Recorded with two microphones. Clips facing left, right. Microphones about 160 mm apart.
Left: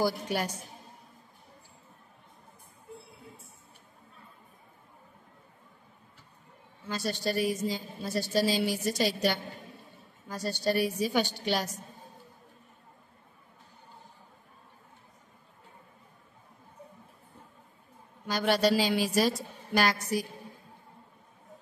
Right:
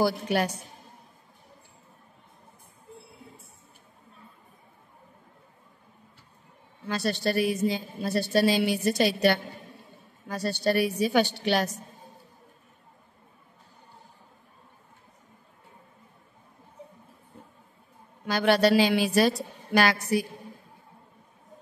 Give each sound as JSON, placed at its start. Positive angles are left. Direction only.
{"t": 0.0, "sound": "a woman's voice", "side_deg": -65}
{"t": 6.9, "sound": "a woman's voice", "side_deg": -70}
{"t": 18.2, "sound": "a woman's voice", "side_deg": -70}